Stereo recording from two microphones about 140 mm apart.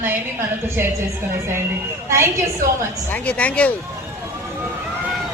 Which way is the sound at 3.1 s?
10° left (ahead or behind).